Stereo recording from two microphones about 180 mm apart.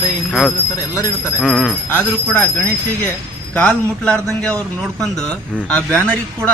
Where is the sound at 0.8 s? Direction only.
20° left (ahead or behind).